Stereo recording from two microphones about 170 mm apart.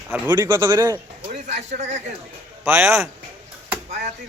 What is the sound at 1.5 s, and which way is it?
Speech, 45° right (ahead or behind).